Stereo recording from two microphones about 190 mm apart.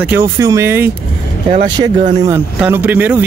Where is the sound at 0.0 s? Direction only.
10° right (ahead or behind).